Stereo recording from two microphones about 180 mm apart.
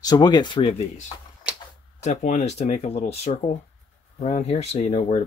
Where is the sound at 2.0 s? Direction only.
40° left (ahead or behind).